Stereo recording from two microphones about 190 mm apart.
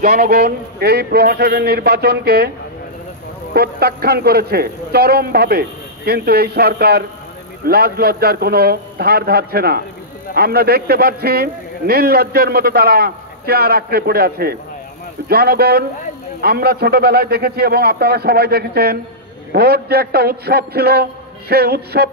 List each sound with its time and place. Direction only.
0.0 s a man's voice: 55° right (ahead or behind)
3.5 s a man's voice: 55° right (ahead or behind)